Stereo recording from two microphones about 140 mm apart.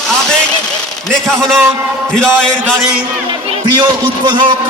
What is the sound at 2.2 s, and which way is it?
Speech, 5° left (ahead or behind).